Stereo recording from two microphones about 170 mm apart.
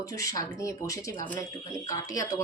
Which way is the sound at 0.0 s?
20° left (ahead or behind).